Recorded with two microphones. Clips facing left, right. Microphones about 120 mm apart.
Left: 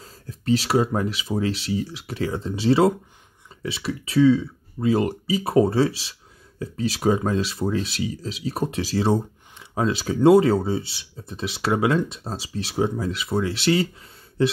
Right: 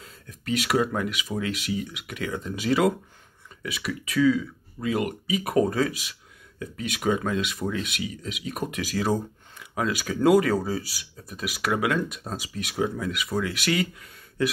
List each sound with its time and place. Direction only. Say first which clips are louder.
0.0 s speech: left 7 dB; 35° left (ahead or behind)